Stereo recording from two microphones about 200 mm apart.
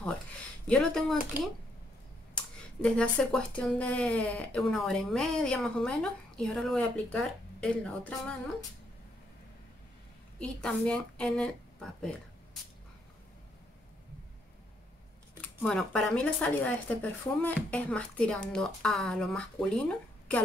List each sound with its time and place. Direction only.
0.7 s speech: centre (ahead or behind)
10.4 s speech: 5° left (ahead or behind)
15.4 s speech: 5° left (ahead or behind)